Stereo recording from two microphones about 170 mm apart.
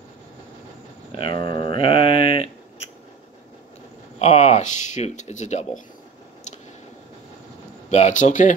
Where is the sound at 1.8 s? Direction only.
30° left (ahead or behind).